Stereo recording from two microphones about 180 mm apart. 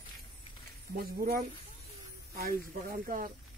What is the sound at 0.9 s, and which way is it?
Speech, 60° right (ahead or behind).